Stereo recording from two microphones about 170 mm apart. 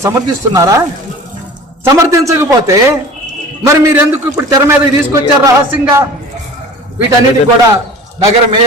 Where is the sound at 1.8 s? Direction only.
15° right (ahead or behind).